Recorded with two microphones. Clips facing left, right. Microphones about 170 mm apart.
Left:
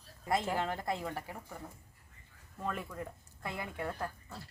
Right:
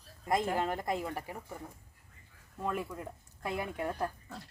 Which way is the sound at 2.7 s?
10° right (ahead or behind).